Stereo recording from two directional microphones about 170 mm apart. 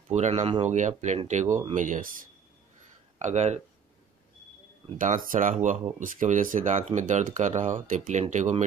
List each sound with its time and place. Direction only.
0.1 s speech: 45° right (ahead or behind)
3.2 s speech: 45° right (ahead or behind)
4.9 s speech: 50° right (ahead or behind)